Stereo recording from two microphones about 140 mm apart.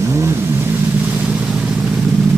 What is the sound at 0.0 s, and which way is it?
Vehicle, 20° right (ahead or behind).